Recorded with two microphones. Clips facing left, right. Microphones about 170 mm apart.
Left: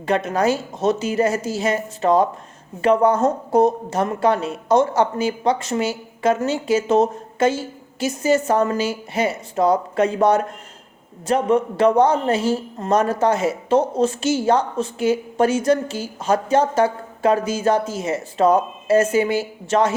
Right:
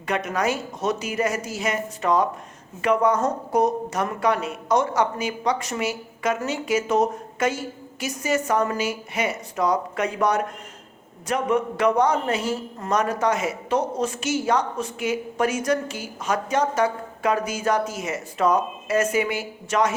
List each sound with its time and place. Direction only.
0.0 s a man's voice: 30° left (ahead or behind)